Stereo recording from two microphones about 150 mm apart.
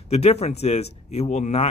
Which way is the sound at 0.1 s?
45° left (ahead or behind).